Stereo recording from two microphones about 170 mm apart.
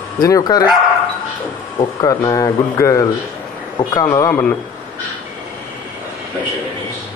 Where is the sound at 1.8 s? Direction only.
20° left (ahead or behind).